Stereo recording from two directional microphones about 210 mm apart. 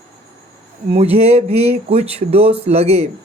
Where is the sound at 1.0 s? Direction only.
30° right (ahead or behind).